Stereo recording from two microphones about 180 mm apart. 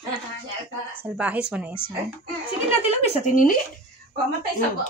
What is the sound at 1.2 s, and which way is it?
Speech, 5° right (ahead or behind).